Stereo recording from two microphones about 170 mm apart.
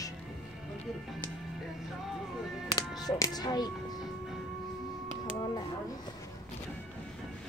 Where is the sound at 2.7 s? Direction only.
25° left (ahead or behind).